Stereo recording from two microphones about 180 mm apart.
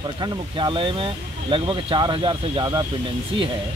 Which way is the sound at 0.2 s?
25° right (ahead or behind).